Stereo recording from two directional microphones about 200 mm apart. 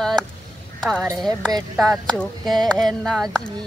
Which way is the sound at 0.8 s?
Centre (ahead or behind).